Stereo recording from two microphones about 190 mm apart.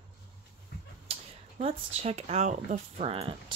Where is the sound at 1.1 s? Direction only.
35° right (ahead or behind).